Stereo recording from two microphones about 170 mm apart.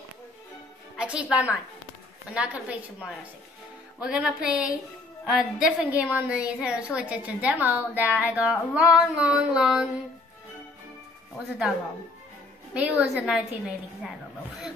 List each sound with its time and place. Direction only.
0.9 s a woman's voice: 5° right (ahead or behind)
11.3 s a woman's voice: 5° right (ahead or behind)
12.7 s a woman's voice: 5° right (ahead or behind)